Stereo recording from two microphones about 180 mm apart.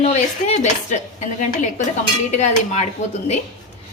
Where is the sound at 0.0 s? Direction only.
35° left (ahead or behind).